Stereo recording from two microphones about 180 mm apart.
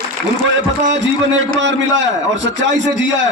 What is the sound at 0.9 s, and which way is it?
A man's voice, 85° right.